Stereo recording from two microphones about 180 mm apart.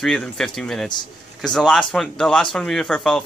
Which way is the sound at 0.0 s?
Centre (ahead or behind).